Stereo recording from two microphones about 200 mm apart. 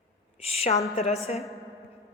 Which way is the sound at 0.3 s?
30° left (ahead or behind).